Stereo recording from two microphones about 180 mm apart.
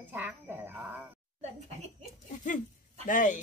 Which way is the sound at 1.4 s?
40° right (ahead or behind).